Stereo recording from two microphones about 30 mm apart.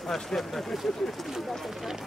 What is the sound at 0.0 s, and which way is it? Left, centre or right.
Speech, centre.